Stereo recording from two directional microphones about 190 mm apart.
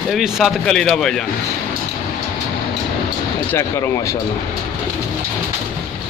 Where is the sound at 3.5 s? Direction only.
15° left (ahead or behind).